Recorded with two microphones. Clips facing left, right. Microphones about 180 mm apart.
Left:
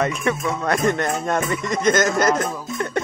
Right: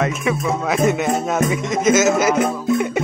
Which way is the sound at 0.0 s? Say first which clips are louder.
Right 1 dB; centre (ahead or behind).